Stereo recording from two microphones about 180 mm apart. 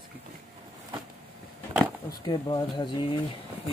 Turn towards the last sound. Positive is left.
turn(degrees=25)  # may be behind; listen again after turning